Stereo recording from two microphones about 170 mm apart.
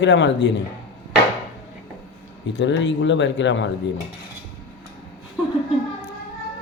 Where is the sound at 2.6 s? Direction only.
90° left.